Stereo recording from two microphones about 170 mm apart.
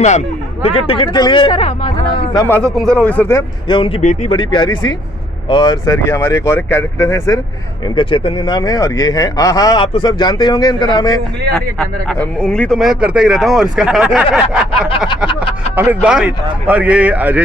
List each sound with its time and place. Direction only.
0.0 s speech: 40° left (ahead or behind)
2.4 s speech: 10° left (ahead or behind)
3.6 s speech: 30° left (ahead or behind)
4.0 s speech: 45° left (ahead or behind)
4.3 s a man's voice: 30° left (ahead or behind)
7.9 s a man's voice: 30° left (ahead or behind)
11.8 s speech: 5° left (ahead or behind)
15.7 s speech: 10° right (ahead or behind)